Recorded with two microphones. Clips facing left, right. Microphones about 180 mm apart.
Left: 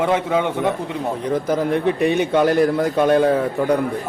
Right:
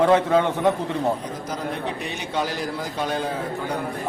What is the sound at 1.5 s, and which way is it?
A man's voice, 60° left (ahead or behind).